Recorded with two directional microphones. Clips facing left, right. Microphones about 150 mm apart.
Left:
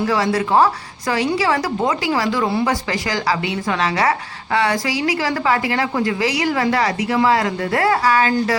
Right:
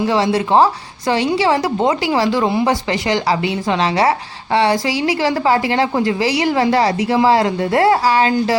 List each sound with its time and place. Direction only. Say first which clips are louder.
0.0 s a woman's voice: right 2 dB; 25° right (ahead or behind)